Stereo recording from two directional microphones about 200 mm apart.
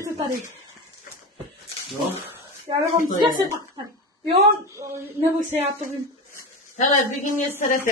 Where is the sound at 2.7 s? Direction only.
20° right (ahead or behind).